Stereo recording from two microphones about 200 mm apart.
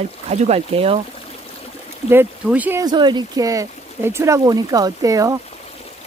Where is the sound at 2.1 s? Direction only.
10° right (ahead or behind).